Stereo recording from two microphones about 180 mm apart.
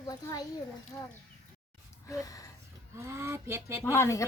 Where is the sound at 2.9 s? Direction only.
15° right (ahead or behind).